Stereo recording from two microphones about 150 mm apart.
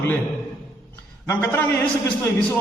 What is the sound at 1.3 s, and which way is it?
Speech, 15° left (ahead or behind).